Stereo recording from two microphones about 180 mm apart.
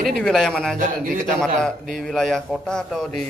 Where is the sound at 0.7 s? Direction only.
45° right (ahead or behind).